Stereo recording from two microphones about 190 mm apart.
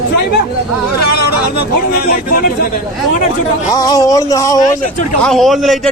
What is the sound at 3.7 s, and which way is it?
Speech, 20° left (ahead or behind).